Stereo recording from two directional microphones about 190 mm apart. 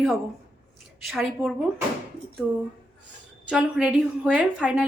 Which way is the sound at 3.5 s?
5° right (ahead or behind).